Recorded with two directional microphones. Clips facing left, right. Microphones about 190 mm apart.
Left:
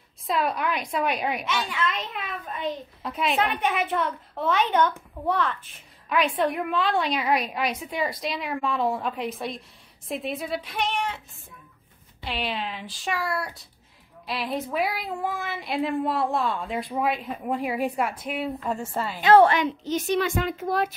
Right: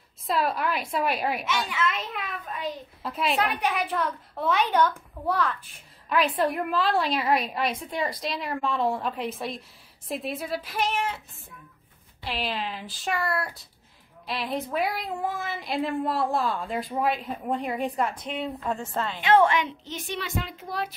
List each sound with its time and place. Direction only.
0.3 s speech: centre (ahead or behind)
12.2 s speech: centre (ahead or behind)
19.2 s a woman's voice: 35° left (ahead or behind)